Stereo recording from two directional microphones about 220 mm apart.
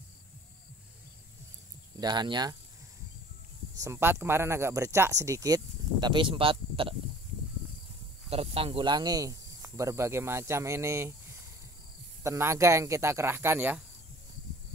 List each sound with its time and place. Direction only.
2.0 s speech: 20° right (ahead or behind)
3.8 s speech: 10° right (ahead or behind)
8.3 s speech: 25° right (ahead or behind)
12.2 s speech: 10° right (ahead or behind)